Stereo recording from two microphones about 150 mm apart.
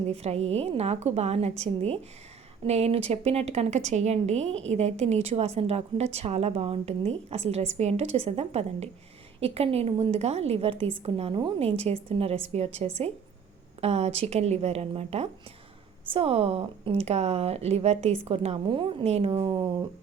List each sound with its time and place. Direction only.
0.1 s a woman's voice: 45° right (ahead or behind)